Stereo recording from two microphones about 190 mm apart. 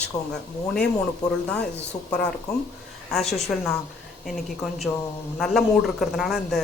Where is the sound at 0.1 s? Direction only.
20° left (ahead or behind).